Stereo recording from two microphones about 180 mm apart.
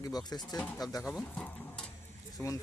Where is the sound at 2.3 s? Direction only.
20° left (ahead or behind).